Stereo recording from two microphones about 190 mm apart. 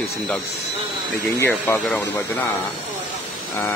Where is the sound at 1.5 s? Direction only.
10° left (ahead or behind).